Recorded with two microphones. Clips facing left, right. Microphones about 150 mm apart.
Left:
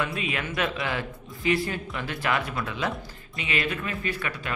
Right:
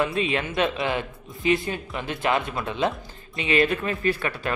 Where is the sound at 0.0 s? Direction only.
30° right (ahead or behind).